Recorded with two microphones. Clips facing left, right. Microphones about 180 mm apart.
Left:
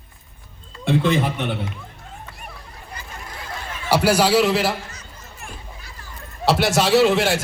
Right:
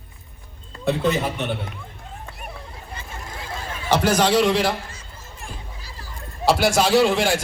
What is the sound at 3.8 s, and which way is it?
Speech, 10° left (ahead or behind).